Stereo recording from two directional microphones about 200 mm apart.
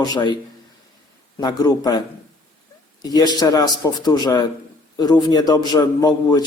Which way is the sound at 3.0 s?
20° left (ahead or behind).